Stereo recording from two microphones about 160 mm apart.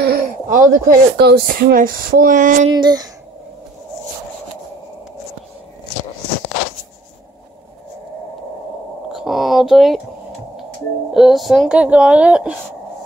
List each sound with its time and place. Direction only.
0.0 s speech: 65° right (ahead or behind)
2.7 s speech: 25° right (ahead or behind)
9.1 s a sound: centre (ahead or behind)
11.1 s a woman's voice: centre (ahead or behind)